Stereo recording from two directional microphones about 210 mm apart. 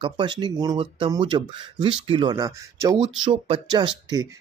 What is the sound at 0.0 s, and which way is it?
Speech, 20° right (ahead or behind).